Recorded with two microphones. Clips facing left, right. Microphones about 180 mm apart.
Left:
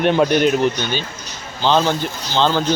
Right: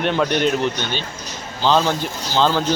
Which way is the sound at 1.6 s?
Centre (ahead or behind).